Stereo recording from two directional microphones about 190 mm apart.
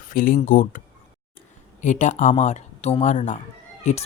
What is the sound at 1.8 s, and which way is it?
Speech, 40° left (ahead or behind).